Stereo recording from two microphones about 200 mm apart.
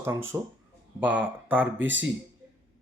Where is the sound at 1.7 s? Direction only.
65° right (ahead or behind).